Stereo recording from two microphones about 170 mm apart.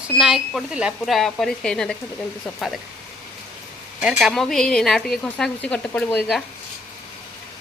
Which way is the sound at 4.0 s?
5° right (ahead or behind).